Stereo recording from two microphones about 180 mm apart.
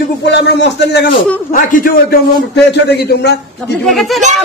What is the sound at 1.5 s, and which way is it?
Speech, 50° left (ahead or behind).